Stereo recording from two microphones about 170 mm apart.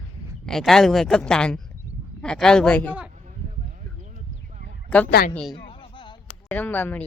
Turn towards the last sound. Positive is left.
turn(degrees=10)  # may be behind; listen again after turning